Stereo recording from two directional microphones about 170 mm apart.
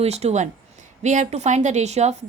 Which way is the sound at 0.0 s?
40° right (ahead or behind).